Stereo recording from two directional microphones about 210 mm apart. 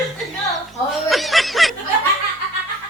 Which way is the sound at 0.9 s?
Centre (ahead or behind).